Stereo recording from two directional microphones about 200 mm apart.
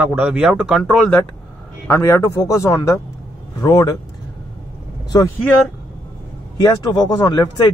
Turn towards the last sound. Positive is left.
turn(degrees=20)  # may be behind; listen again after turning